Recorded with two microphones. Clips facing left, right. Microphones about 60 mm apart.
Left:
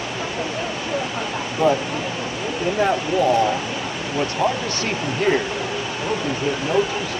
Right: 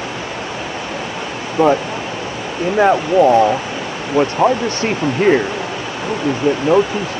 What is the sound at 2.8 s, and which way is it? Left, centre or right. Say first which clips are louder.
Speech: right 8 dB; right.